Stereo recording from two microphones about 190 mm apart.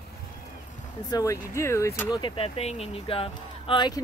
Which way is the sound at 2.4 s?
35° left (ahead or behind).